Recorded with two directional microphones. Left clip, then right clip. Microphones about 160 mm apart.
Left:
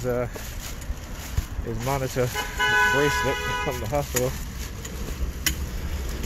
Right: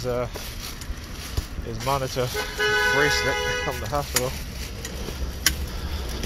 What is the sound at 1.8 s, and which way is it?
Speech, 45° left (ahead or behind).